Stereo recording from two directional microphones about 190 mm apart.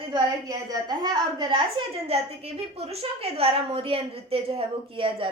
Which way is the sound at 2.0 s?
30° right (ahead or behind).